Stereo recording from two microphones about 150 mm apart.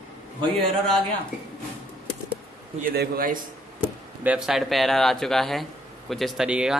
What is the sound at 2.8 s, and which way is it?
Speech, 75° right (ahead or behind).